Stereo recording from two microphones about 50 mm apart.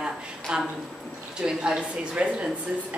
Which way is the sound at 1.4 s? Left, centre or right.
Centre.